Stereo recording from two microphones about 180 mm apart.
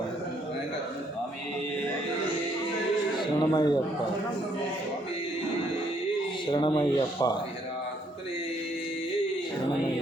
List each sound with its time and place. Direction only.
3.2 s speech: 25° left (ahead or behind)
6.5 s speech: 25° left (ahead or behind)